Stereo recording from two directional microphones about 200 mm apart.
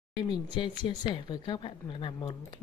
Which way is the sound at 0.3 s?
25° left (ahead or behind).